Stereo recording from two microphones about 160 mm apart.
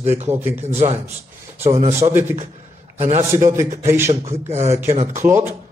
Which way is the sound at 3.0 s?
40° right (ahead or behind).